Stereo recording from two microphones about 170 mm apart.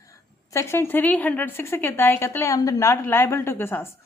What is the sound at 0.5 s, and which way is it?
A woman's voice, 15° left (ahead or behind).